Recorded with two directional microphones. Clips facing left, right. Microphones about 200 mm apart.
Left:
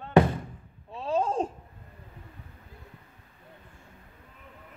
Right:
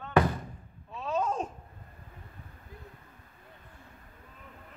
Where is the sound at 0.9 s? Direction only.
30° left (ahead or behind).